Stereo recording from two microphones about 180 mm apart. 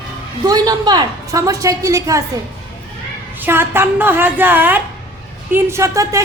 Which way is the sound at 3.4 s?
10° right (ahead or behind).